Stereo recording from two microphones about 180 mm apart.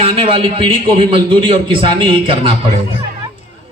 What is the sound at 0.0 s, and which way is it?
A man's voice, 30° right (ahead or behind).